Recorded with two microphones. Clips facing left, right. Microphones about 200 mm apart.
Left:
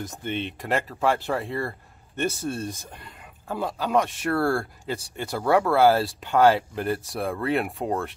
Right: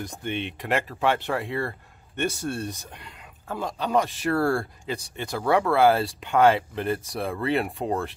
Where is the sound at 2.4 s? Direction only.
5° left (ahead or behind).